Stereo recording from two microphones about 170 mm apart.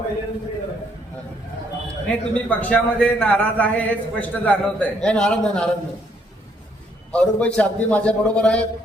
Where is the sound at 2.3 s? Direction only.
10° left (ahead or behind).